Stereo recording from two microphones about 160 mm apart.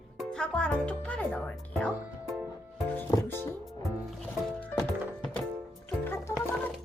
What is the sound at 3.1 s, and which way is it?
Speech, 20° left (ahead or behind).